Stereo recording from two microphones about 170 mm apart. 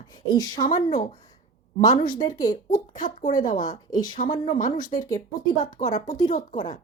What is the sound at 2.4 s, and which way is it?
Speech, 50° left (ahead or behind).